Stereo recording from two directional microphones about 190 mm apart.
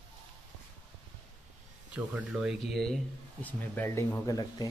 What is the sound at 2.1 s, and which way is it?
Speech, centre (ahead or behind).